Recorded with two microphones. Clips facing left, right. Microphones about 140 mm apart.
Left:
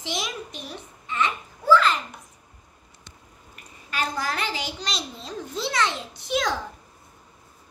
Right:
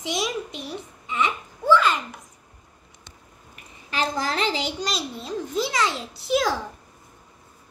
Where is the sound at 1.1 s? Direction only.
15° right (ahead or behind).